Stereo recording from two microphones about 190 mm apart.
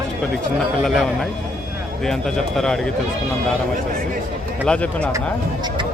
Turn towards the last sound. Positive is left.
turn(degrees=5)  # may be behind; listen again after turning